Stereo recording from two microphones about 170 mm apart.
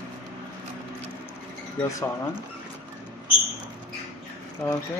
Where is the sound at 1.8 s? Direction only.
20° left (ahead or behind).